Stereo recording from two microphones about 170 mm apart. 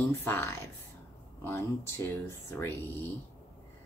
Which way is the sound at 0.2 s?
10° left (ahead or behind).